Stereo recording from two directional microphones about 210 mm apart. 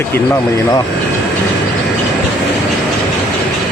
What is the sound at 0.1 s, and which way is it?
Speech, 10° left (ahead or behind).